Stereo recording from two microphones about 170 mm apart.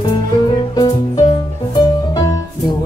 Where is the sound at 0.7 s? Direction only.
30° left (ahead or behind).